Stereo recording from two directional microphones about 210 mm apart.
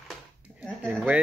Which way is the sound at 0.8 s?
5° right (ahead or behind).